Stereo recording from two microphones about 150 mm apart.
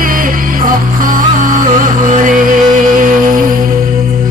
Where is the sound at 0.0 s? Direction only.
65° right (ahead or behind).